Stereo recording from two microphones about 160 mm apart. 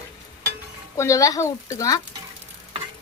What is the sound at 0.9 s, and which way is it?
A woman's voice, 20° left (ahead or behind).